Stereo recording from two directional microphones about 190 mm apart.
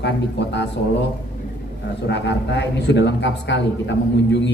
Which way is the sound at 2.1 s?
60° left (ahead or behind).